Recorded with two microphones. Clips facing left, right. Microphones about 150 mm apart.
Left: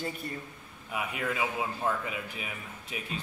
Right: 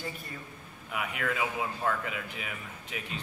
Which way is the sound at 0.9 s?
20° left (ahead or behind).